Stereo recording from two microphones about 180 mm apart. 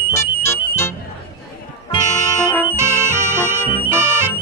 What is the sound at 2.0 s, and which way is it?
Music, 15° right (ahead or behind).